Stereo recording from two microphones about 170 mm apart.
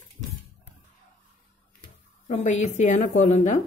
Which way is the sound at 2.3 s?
45° left (ahead or behind).